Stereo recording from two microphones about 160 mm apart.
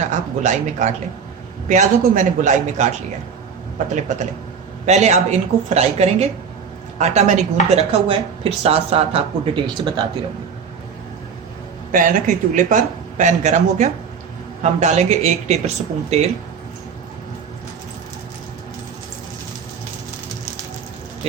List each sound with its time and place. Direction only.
0.0 s speech: 50° right (ahead or behind)
4.9 s a woman's voice: 45° right (ahead or behind); by 9.9 s 30° right (ahead or behind)
11.9 s speech: 55° right (ahead or behind)